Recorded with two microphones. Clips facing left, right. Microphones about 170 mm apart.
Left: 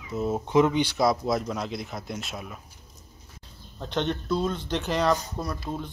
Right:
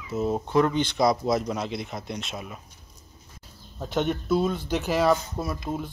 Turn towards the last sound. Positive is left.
turn(degrees=-10)  # may be behind; listen again after turning